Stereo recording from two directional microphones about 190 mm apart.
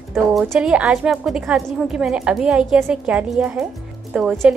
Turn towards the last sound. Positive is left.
turn(degrees=0)  # may be behind; listen again after turning